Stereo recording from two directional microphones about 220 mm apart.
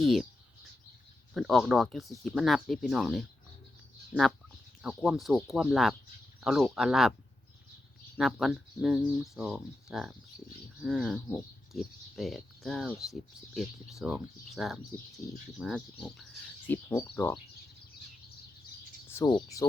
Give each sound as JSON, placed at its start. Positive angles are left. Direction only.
{"t": 0.0, "sound": "speech", "side_deg": 0}
{"t": 1.3, "sound": "speech", "side_deg": 0}
{"t": 8.2, "sound": "speech", "side_deg": 0}
{"t": 19.1, "sound": "speech", "side_deg": 20}